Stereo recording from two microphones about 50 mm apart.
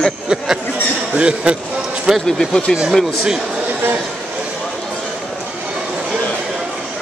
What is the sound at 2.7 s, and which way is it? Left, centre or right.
Speech, centre.